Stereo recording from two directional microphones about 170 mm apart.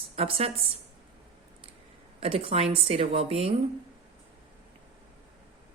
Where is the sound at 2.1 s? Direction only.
35° right (ahead or behind).